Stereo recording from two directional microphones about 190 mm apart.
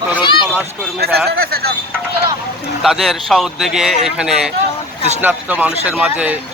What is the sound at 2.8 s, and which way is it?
Speech, centre (ahead or behind).